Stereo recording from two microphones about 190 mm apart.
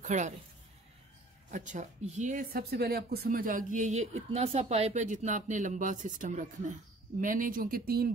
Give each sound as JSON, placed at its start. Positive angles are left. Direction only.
{"t": 0.0, "sound": "a woman's voice", "side_deg": -40}
{"t": 1.5, "sound": "speech", "side_deg": -40}